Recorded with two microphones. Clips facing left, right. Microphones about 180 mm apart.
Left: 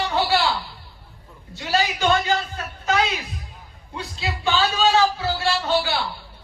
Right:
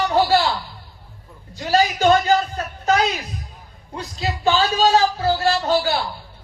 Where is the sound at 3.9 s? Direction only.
40° right (ahead or behind).